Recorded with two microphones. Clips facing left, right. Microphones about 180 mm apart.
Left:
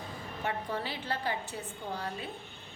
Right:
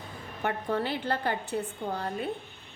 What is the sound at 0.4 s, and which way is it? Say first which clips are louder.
A woman's voice: right 6 dB; 60° right (ahead or behind).